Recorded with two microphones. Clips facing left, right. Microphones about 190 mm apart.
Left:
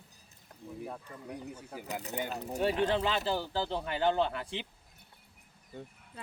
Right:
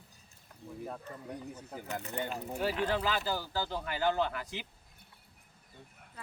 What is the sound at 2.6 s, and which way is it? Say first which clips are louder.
Speech: left 3 dB; 25° left (ahead or behind).